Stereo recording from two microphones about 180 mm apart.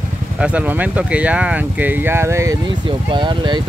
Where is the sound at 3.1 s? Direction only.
25° right (ahead or behind).